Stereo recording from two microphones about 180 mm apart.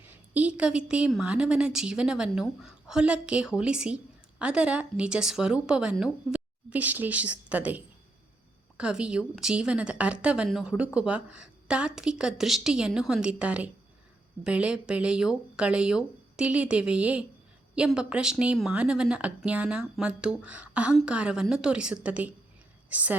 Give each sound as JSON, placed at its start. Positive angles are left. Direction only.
{"t": 0.0, "sound": "a woman's voice", "side_deg": -10}
{"t": 8.8, "sound": "a woman's voice", "side_deg": -5}